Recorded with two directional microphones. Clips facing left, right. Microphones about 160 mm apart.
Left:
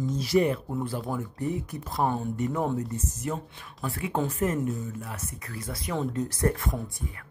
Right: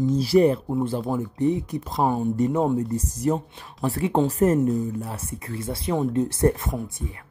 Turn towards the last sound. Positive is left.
turn(degrees=-25)  # may be behind; listen again after turning